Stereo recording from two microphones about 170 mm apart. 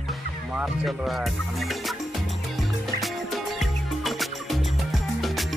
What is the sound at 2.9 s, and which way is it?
Music, centre (ahead or behind).